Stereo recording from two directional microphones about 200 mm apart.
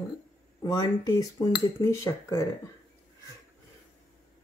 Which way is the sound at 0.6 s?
20° left (ahead or behind).